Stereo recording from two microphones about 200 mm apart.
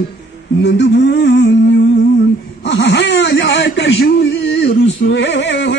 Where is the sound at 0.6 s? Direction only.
60° left (ahead or behind).